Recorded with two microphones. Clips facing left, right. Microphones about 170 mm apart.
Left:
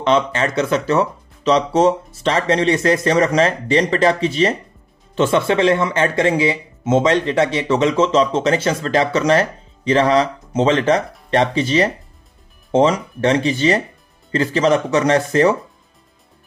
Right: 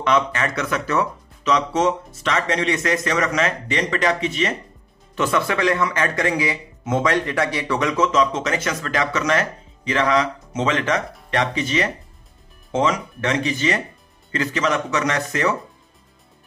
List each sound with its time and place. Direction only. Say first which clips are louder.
0.0 s speech: left 3 dB; 30° left (ahead or behind)